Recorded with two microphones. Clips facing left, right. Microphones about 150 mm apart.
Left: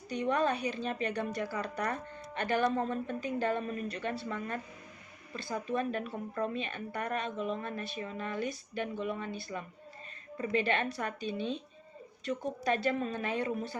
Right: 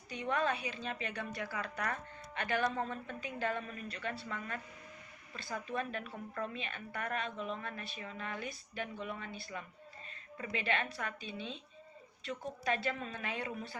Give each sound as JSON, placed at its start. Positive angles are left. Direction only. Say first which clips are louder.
{"t": 0.1, "sound": "speech", "louder": "left 5 dB", "side_deg": 40}